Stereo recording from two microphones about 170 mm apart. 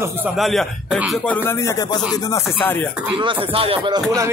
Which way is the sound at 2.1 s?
20° left (ahead or behind).